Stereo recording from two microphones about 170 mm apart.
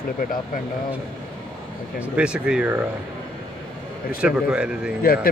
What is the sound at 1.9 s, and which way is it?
Speech, 5° right (ahead or behind).